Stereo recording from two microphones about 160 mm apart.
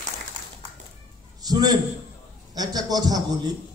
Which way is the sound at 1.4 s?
25° right (ahead or behind).